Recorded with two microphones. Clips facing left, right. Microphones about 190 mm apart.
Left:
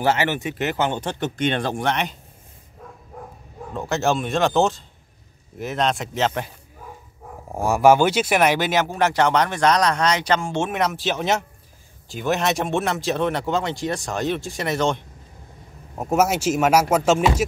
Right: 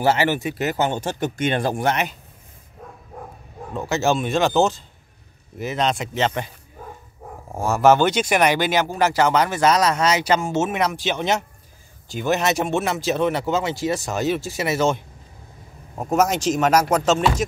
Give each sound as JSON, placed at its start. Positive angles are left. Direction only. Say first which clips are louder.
{"t": 0.4, "sound": "speech", "louder": "right 1 dB", "side_deg": -40}
{"t": 0.9, "sound": "speech", "louder": "right 1 dB", "side_deg": -10}
{"t": 3.7, "sound": "speech", "louder": "right 1 dB", "side_deg": 0}
{"t": 7.5, "sound": "speech", "louder": "left 1 dB", "side_deg": 15}
{"t": 16.0, "sound": "speech", "louder": "even", "side_deg": 10}